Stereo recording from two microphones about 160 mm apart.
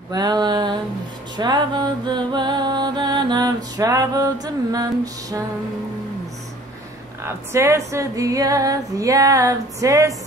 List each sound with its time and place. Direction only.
0.1 s female singing: 25° right (ahead or behind)
1.3 s music: 25° right (ahead or behind)
4.7 s female singing: 20° right (ahead or behind)
7.2 s female singing: 15° right (ahead or behind)